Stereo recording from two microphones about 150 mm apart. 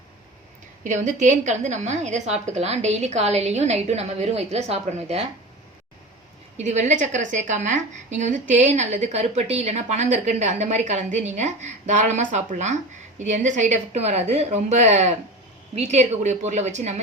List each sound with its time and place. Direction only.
0.9 s a woman's voice: 55° right (ahead or behind)
6.6 s a woman's voice: 50° right (ahead or behind)